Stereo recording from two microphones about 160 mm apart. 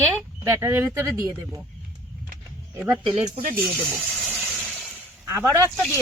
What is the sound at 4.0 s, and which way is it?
Gush, centre (ahead or behind).